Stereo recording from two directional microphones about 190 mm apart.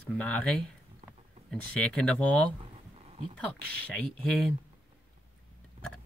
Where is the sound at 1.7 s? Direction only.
5° left (ahead or behind).